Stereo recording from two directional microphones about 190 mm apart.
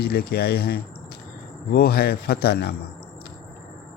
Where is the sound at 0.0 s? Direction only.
55° left (ahead or behind).